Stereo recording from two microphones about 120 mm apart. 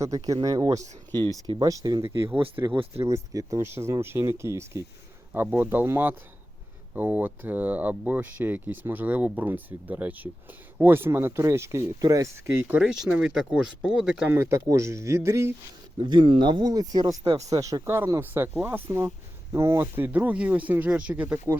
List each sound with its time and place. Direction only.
0.0 s speech: 30° right (ahead or behind)
2.0 s speech: 20° right (ahead or behind)
14.3 s speech: 20° right (ahead or behind)
16.0 s speech: 40° right (ahead or behind); by 21.6 s 15° right (ahead or behind)